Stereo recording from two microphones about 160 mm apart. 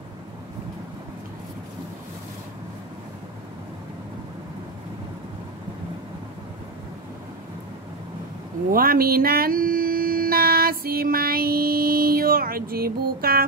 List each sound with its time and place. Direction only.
8.7 s music: 65° right (ahead or behind)